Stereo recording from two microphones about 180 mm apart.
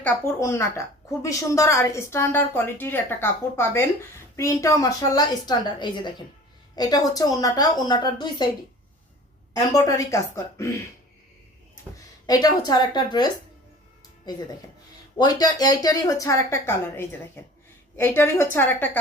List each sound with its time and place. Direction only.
0.0 s a woman's voice: 15° left (ahead or behind)
9.5 s a woman's voice: 20° left (ahead or behind)
12.2 s a woman's voice: 20° left (ahead or behind)
15.2 s a woman's voice: 20° left (ahead or behind)
17.9 s a woman's voice: 10° left (ahead or behind)